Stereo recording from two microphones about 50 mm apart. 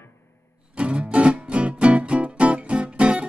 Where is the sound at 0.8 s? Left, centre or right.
Right.